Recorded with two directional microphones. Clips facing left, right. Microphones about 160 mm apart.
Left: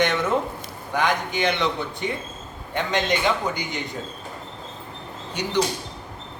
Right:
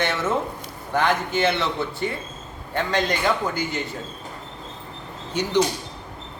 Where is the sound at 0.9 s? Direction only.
15° left (ahead or behind).